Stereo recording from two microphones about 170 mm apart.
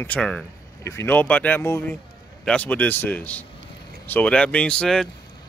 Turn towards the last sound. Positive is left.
turn(degrees=5)  # may be behind; listen again after turning